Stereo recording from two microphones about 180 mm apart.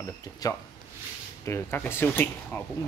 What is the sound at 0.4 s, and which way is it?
Speech, 20° left (ahead or behind).